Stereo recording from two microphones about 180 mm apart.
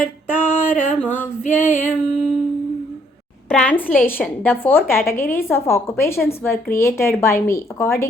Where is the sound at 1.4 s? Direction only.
40° left (ahead or behind).